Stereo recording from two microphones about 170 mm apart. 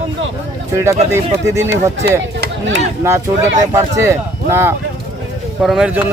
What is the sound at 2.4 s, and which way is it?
Chop, 90° right.